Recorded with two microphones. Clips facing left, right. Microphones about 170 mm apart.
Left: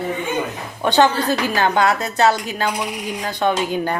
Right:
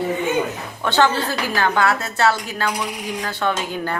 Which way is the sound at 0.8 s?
15° left (ahead or behind).